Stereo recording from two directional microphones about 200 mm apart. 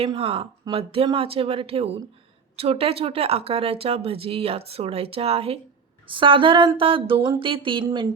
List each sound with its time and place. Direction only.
0.0 s speech: 30° right (ahead or behind)